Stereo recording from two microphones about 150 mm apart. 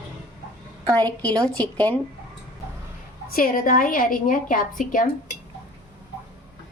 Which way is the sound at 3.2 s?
70° left (ahead or behind).